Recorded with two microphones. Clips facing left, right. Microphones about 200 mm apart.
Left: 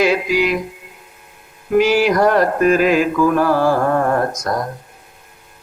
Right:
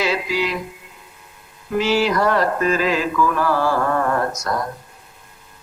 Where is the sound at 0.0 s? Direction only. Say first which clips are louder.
Left 6 dB; 50° left (ahead or behind).